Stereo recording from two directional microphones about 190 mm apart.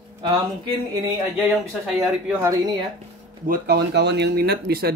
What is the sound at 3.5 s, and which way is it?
Speech, 60° right (ahead or behind).